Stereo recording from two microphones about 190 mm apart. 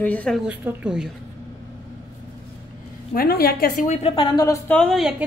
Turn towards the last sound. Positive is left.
turn(degrees=0)  # may be behind; listen again after turning